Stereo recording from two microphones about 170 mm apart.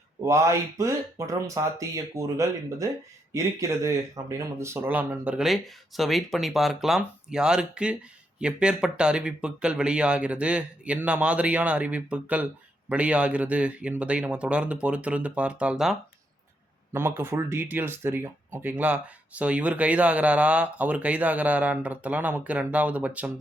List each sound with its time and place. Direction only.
0.2 s speech: 15° right (ahead or behind)
16.9 s speech: 15° right (ahead or behind)